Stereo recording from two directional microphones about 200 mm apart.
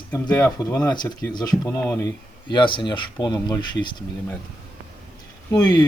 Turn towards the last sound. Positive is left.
turn(degrees=15)  # may be behind; listen again after turning